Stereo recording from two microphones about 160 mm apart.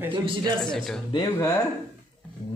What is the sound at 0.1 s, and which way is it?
Speech, 30° right (ahead or behind).